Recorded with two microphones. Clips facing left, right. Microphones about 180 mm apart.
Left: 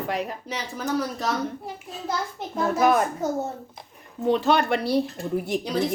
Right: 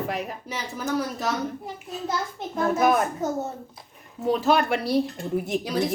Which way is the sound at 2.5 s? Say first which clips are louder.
Even; centre (ahead or behind).